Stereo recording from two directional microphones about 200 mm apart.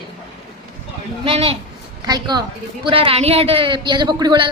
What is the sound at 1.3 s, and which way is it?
A woman's voice, 30° right (ahead or behind).